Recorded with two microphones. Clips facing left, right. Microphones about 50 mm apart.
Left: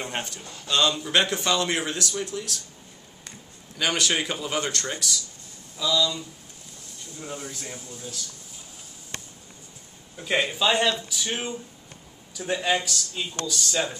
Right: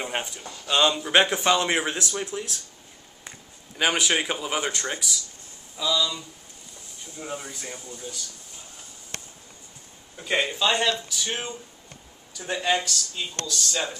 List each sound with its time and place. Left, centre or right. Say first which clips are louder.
0.0 s a man's voice: right 2 dB; centre
7.4 s speech: even; centre
10.1 s speech: even; centre